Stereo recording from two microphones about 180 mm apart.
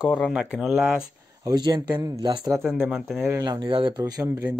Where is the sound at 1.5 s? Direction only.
25° right (ahead or behind).